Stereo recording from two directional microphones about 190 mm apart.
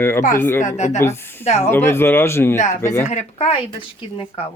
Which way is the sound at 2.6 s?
40° left (ahead or behind).